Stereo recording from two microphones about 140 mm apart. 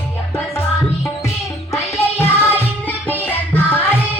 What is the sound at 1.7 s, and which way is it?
Music, 15° left (ahead or behind).